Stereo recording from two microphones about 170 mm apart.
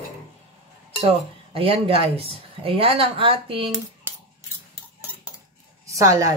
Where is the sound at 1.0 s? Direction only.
35° right (ahead or behind).